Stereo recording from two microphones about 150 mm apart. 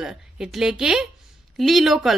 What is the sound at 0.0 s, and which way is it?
Speech, 5° right (ahead or behind).